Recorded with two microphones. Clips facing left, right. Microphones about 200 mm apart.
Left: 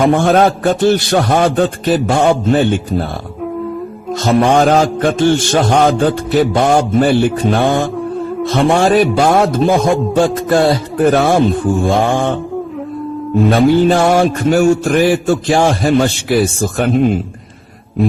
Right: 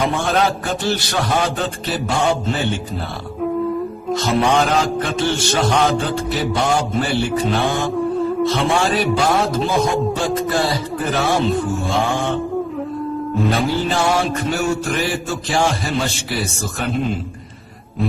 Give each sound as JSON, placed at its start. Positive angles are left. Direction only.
{"t": 0.0, "sound": "a man's voice", "side_deg": 50}
{"t": 4.1, "sound": "a man's voice", "side_deg": 50}
{"t": 13.5, "sound": "a man's voice", "side_deg": 50}